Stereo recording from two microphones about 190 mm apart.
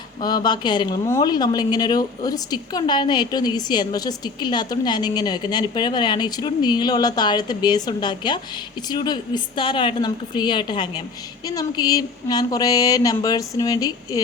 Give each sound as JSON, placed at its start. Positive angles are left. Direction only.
{"t": 0.2, "sound": "speech", "side_deg": 20}